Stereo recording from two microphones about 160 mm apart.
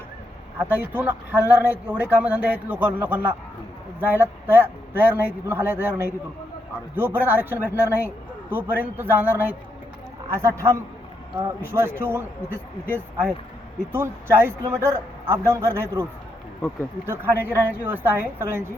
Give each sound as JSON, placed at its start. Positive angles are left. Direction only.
{"t": 0.6, "sound": "a man's voice", "side_deg": -10}
{"t": 13.9, "sound": "a man's voice", "side_deg": -15}
{"t": 17.1, "sound": "a man's voice", "side_deg": -15}